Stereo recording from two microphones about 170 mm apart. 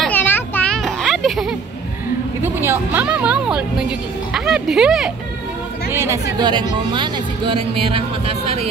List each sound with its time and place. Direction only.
0.0 s children playing: 10° left (ahead or behind)
2.4 s speech: 15° right (ahead or behind)
5.9 s a woman's voice: 15° right (ahead or behind); by 8.6 s 35° right (ahead or behind)